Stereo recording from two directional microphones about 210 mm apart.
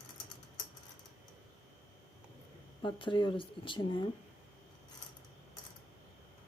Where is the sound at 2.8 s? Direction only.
25° left (ahead or behind).